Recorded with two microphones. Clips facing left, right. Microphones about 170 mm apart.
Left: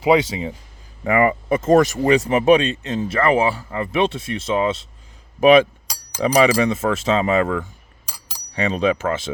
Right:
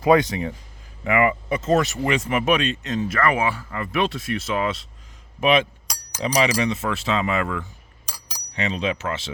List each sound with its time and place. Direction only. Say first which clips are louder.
0.0 s speech: left 1 dB; 20° left (ahead or behind)
1.0 s speech: left 3 dB; 35° left (ahead or behind)
5.4 s chink: left 7 dB; 35° left (ahead or behind)
6.3 s speech: left 5 dB; 50° left (ahead or behind)
8.7 s speech: left 7 dB; 50° left (ahead or behind)